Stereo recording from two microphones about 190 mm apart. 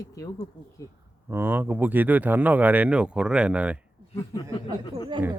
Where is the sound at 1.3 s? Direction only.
10° right (ahead or behind).